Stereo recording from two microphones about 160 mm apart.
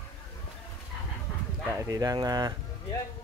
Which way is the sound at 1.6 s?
20° right (ahead or behind).